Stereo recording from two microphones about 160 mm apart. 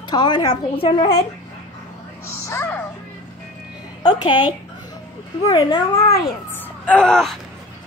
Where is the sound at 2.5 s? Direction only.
15° left (ahead or behind).